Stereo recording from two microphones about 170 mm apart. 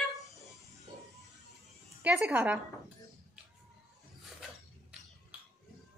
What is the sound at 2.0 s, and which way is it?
Speech, 10° right (ahead or behind).